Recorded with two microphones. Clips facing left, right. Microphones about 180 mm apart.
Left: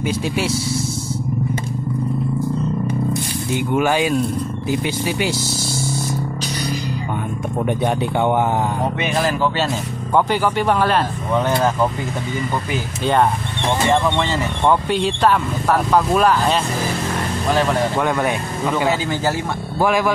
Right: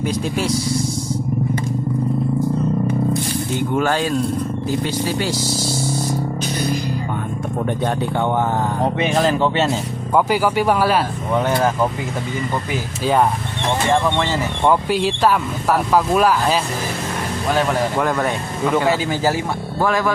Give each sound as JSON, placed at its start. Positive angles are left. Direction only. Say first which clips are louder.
{"t": 0.0, "sound": "speech", "louder": "even", "side_deg": 5}
{"t": 3.5, "sound": "speech", "louder": "left 2 dB", "side_deg": 10}
{"t": 7.6, "sound": "speech", "louder": "left 2 dB", "side_deg": 15}
{"t": 9.0, "sound": "speech", "louder": "right 3 dB", "side_deg": -25}
{"t": 9.7, "sound": "speech", "louder": "right 1 dB", "side_deg": -10}
{"t": 13.0, "sound": "speech", "louder": "even", "side_deg": -5}
{"t": 17.9, "sound": "speech", "louder": "even", "side_deg": 0}
{"t": 19.8, "sound": "speech", "louder": "left 2 dB", "side_deg": 10}